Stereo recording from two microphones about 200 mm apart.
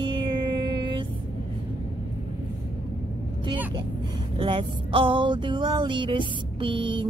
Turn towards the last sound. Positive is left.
turn(degrees=-25)  # may be behind; listen again after turning